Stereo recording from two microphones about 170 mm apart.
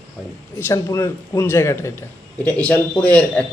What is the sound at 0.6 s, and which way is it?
Speech, 15° left (ahead or behind).